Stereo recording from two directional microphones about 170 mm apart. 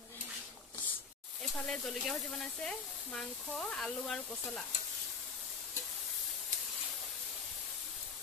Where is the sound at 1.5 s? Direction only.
Centre (ahead or behind).